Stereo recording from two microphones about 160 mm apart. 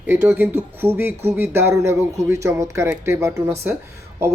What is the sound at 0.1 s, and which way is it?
Speech, 10° right (ahead or behind).